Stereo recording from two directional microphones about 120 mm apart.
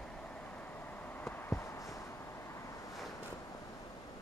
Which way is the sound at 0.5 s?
15° left (ahead or behind).